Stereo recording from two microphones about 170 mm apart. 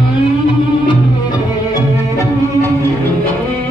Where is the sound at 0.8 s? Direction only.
25° left (ahead or behind).